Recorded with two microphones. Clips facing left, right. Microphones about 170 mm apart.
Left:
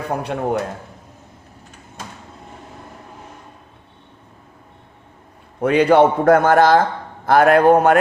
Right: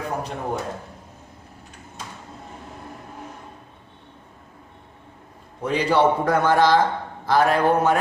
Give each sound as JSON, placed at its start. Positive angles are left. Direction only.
{"t": 0.2, "sound": "a man's voice", "side_deg": 65}
{"t": 5.5, "sound": "a man's voice", "side_deg": 60}